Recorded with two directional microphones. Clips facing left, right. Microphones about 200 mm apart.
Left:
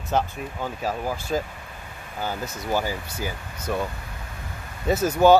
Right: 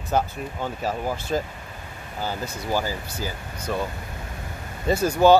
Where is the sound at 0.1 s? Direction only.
Centre (ahead or behind).